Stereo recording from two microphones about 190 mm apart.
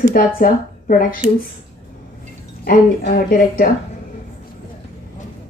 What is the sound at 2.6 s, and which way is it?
A woman's voice, 55° left (ahead or behind).